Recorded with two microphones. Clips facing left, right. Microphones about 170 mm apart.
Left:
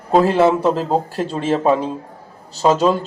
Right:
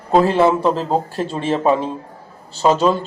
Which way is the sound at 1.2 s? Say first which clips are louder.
Left 1 dB; 40° left (ahead or behind).